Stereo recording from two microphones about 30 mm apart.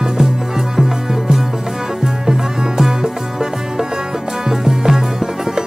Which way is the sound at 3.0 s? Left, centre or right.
Centre.